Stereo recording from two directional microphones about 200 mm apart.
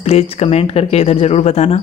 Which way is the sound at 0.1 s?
30° left (ahead or behind).